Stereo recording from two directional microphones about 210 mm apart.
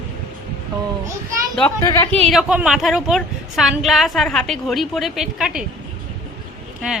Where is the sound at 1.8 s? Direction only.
15° left (ahead or behind).